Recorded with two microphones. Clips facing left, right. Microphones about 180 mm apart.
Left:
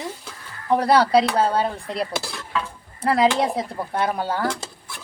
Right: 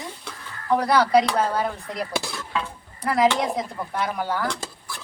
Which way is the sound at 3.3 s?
30° left (ahead or behind).